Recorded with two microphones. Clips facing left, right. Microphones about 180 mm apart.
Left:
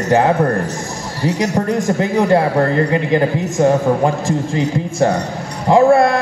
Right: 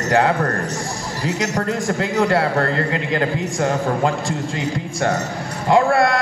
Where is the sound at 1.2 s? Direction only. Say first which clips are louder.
Left 5 dB; 30° left (ahead or behind).